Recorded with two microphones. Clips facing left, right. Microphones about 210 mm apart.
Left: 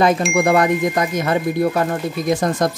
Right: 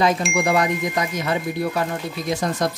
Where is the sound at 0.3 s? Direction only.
55° left (ahead or behind).